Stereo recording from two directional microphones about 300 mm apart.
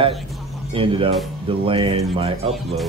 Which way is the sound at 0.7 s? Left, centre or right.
Centre.